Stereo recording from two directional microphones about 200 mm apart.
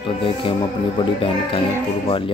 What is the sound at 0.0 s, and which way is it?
Speech, 25° left (ahead or behind).